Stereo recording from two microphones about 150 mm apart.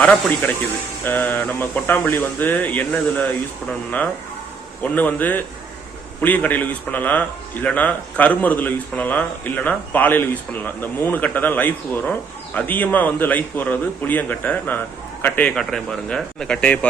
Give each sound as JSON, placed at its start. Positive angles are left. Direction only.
{"t": 0.0, "sound": "a man's voice", "side_deg": 10}
{"t": 4.8, "sound": "a man's voice", "side_deg": 10}